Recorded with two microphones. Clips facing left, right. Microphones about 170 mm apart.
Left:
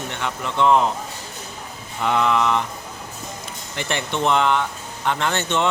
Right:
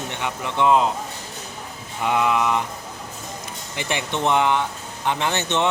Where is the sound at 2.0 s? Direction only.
10° right (ahead or behind).